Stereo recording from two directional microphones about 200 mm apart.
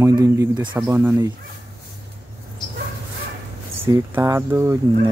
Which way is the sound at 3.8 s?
15° right (ahead or behind).